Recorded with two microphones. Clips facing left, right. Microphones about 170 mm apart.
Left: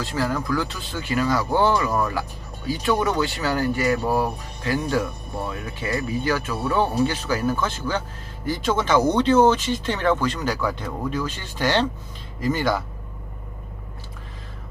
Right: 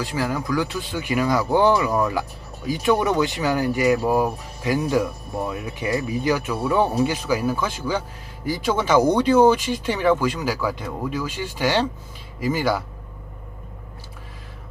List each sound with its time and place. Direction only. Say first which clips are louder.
0.0 s speech: even; 15° right (ahead or behind)